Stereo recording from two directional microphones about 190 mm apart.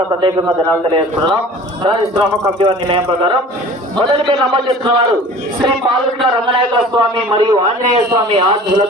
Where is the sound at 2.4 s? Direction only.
30° right (ahead or behind).